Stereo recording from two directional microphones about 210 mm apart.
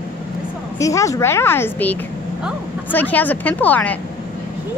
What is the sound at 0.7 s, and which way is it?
A woman's voice, 15° left (ahead or behind).